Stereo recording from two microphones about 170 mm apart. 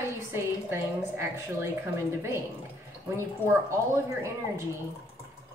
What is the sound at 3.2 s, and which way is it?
A woman's voice, 15° right (ahead or behind).